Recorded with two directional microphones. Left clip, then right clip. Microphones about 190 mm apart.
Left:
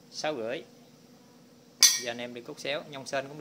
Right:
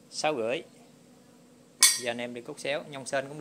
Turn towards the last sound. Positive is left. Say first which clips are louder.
# right 2 dB
turn(degrees=-15)  # may be behind; listen again after turning